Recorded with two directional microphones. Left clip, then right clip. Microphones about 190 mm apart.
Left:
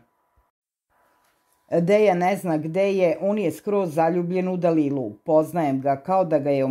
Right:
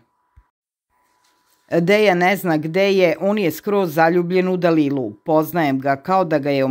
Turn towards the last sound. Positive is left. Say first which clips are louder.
# right 3 dB
turn(degrees=-15)  # may be behind; listen again after turning